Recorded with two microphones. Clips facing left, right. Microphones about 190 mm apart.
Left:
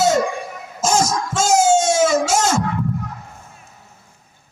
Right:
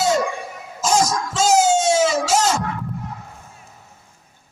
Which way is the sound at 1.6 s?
50° left (ahead or behind).